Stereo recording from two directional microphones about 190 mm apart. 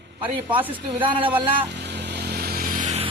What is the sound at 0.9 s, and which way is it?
Speech, 25° right (ahead or behind).